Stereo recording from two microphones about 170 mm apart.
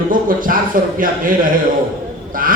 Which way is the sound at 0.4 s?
55° right (ahead or behind).